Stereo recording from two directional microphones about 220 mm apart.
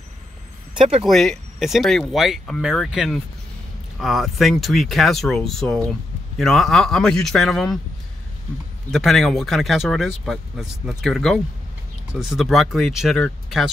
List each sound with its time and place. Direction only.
1.0 s speech: centre (ahead or behind)
8.9 s speech: centre (ahead or behind)